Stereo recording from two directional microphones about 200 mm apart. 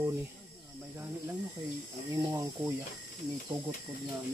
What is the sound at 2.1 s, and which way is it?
Speech, 15° right (ahead or behind).